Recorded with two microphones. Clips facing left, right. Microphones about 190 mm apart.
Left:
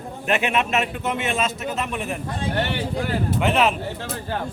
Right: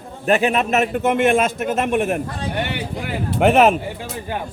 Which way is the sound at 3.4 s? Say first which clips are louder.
Right 8 dB; 50° right (ahead or behind).